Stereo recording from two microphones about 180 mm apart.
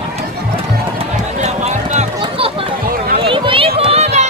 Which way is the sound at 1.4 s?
40° right (ahead or behind).